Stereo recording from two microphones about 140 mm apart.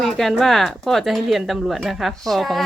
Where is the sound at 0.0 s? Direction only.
Centre (ahead or behind).